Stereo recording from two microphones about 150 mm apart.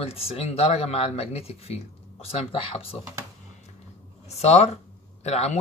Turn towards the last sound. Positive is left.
turn(degrees=45)  # may be behind; listen again after turning